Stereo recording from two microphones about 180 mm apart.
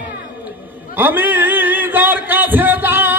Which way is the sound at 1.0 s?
10° right (ahead or behind).